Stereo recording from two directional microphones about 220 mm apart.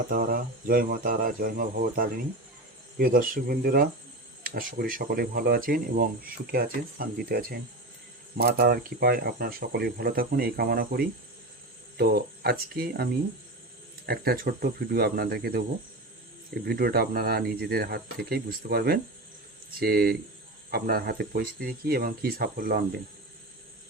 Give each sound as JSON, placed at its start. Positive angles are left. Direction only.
{"t": 0.1, "sound": "speech", "side_deg": -40}
{"t": 14.1, "sound": "speech", "side_deg": -45}
{"t": 16.6, "sound": "speech", "side_deg": -45}